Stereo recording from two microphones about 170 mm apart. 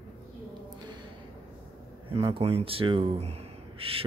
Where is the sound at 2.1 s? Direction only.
35° right (ahead or behind).